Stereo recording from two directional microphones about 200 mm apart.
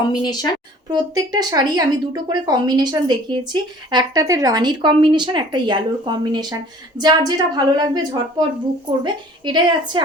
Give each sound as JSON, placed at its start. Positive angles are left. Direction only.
{"t": 0.1, "sound": "a woman's voice", "side_deg": 20}
{"t": 0.9, "sound": "a woman's voice", "side_deg": -20}